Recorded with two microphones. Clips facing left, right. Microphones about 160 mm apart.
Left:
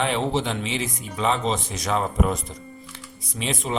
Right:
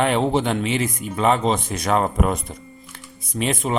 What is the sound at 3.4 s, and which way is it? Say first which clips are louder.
Speech: right 5 dB; 50° right (ahead or behind).